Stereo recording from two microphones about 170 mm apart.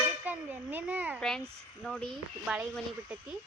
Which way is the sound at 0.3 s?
10° right (ahead or behind).